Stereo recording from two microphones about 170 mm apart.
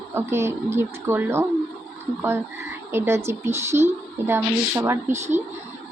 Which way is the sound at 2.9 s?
15° right (ahead or behind).